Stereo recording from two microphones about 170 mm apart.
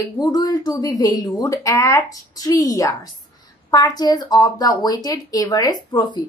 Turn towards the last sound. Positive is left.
turn(degrees=25)  # may be behind; listen again after turning